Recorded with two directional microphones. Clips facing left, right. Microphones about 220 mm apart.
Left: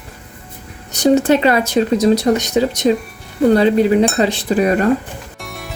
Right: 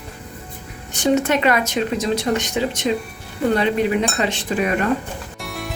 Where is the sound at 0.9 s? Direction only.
40° left (ahead or behind).